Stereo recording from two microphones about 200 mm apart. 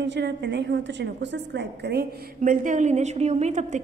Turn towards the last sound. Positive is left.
turn(degrees=-35)  # may be behind; listen again after turning